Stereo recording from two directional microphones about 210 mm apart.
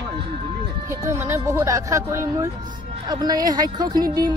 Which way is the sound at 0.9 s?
10° right (ahead or behind).